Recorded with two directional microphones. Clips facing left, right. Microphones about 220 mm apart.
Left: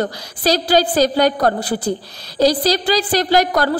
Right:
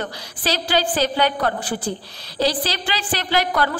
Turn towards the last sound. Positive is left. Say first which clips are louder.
# left 5 dB
turn(degrees=40)  # may be behind; listen again after turning